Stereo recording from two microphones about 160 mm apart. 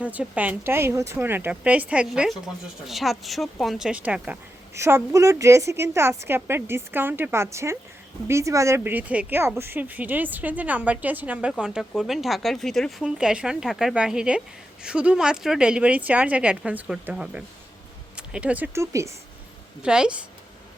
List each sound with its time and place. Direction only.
0.0 s speech: 10° right (ahead or behind)
19.8 s a woman's voice: 5° right (ahead or behind)